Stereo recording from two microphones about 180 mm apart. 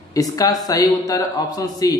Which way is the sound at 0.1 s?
20° left (ahead or behind).